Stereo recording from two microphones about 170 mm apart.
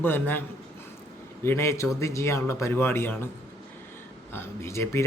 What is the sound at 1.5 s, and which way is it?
Speech, 15° left (ahead or behind).